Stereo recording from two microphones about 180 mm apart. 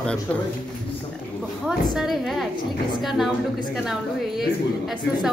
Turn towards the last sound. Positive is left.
turn(degrees=0)  # may be behind; listen again after turning